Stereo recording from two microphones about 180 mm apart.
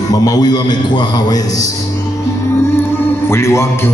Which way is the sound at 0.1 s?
20° left (ahead or behind).